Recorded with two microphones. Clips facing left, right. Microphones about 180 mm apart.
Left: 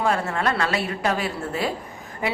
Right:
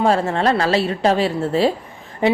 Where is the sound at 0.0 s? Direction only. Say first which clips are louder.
Right 6 dB; 30° right (ahead or behind).